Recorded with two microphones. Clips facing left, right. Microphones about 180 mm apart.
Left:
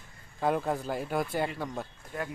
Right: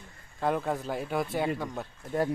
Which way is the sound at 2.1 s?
40° right (ahead or behind).